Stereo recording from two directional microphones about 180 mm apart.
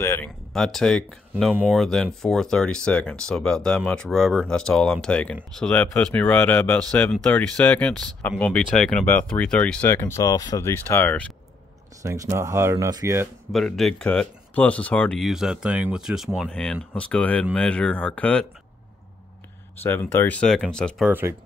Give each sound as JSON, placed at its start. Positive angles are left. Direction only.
{"t": 0.0, "sound": "speech", "side_deg": 15}
{"t": 0.5, "sound": "speech", "side_deg": 0}
{"t": 12.0, "sound": "speech", "side_deg": -15}
{"t": 13.5, "sound": "speech", "side_deg": 0}
{"t": 19.8, "sound": "speech", "side_deg": 10}
{"t": 21.1, "sound": "speech", "side_deg": -10}